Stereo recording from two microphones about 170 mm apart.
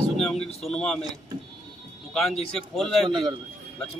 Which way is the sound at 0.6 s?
5° left (ahead or behind).